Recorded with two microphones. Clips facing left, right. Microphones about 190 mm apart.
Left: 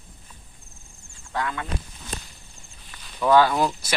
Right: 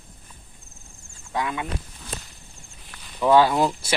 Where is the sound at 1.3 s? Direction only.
15° right (ahead or behind).